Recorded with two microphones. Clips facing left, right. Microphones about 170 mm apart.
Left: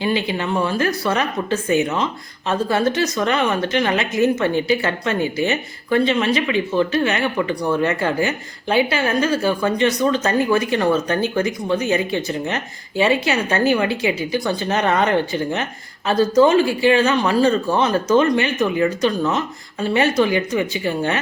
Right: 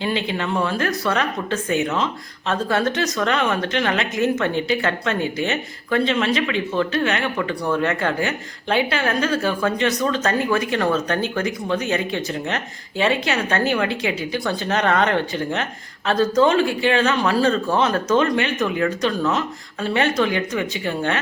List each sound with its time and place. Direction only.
0.0 s a woman's voice: 5° left (ahead or behind)